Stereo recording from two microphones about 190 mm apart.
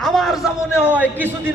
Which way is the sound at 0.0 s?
Centre (ahead or behind).